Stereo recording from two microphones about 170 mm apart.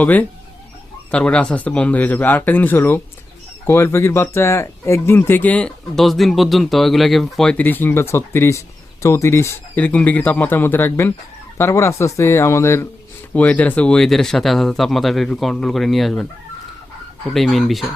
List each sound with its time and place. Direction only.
0.0 s speech: 10° left (ahead or behind)
17.3 s speech: centre (ahead or behind)